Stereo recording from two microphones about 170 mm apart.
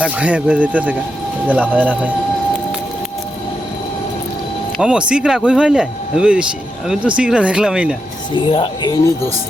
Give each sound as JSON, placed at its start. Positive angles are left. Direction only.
{"t": 0.0, "sound": "speech", "side_deg": -10}
{"t": 4.8, "sound": "speech", "side_deg": -5}
{"t": 8.4, "sound": "speech", "side_deg": 30}